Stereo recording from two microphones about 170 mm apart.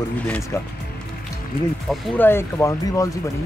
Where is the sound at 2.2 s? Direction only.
15° left (ahead or behind).